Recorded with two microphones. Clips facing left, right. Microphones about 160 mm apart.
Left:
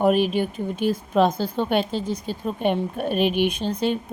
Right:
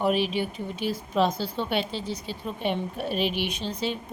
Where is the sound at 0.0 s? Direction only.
50° left (ahead or behind).